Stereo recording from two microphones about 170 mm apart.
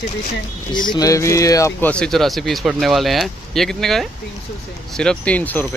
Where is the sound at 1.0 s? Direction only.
20° left (ahead or behind).